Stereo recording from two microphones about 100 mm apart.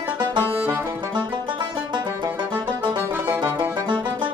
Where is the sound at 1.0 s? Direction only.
50° right (ahead or behind).